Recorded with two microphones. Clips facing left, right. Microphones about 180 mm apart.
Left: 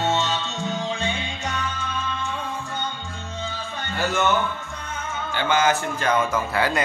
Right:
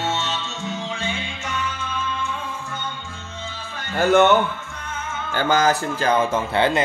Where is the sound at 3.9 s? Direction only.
60° right (ahead or behind).